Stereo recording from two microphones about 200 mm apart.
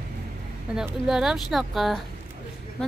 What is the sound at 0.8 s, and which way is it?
Speech, 5° right (ahead or behind).